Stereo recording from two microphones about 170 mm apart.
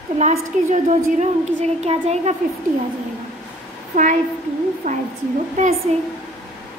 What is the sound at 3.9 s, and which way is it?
A woman's voice, 50° right (ahead or behind).